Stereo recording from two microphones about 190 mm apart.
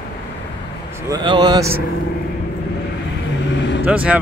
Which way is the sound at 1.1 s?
25° right (ahead or behind).